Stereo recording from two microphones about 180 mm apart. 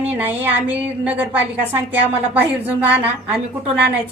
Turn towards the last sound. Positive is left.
turn(degrees=-5)  # may be behind; listen again after turning